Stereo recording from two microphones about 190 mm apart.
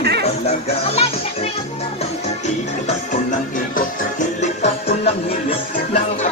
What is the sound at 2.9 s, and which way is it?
Music, 40° left (ahead or behind).